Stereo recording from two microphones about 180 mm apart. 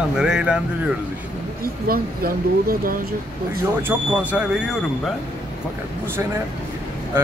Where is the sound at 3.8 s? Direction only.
10° right (ahead or behind).